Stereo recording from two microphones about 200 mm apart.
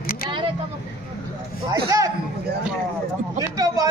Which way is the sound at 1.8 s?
15° right (ahead or behind).